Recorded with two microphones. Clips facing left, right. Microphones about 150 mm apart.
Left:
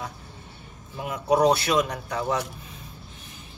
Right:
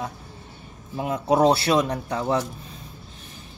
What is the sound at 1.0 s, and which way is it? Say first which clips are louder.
Speech: right 2 dB; 25° right (ahead or behind).